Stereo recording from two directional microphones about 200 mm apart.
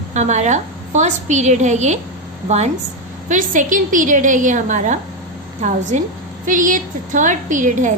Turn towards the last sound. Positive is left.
turn(degrees=-40)  # may be behind; listen again after turning